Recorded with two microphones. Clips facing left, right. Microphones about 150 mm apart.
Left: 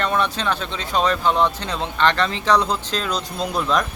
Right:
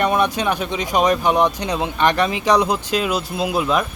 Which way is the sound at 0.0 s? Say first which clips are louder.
Right 4 dB; 15° right (ahead or behind).